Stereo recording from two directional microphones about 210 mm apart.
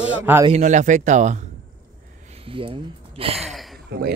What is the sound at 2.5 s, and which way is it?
Speech, 25° right (ahead or behind).